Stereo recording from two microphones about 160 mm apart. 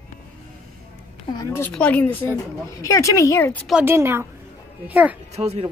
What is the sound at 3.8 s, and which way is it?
A woman's voice, 15° right (ahead or behind).